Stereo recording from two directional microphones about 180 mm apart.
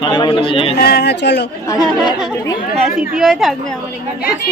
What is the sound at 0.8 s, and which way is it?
Speech, 60° left (ahead or behind).